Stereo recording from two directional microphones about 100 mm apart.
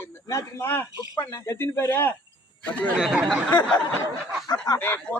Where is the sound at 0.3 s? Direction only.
30° left (ahead or behind).